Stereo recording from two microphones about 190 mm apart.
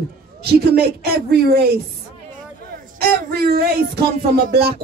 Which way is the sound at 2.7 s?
55° right (ahead or behind).